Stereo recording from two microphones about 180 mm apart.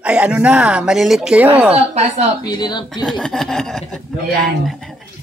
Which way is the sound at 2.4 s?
25° left (ahead or behind).